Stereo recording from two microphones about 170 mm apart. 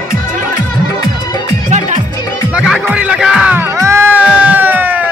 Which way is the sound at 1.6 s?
45° right (ahead or behind).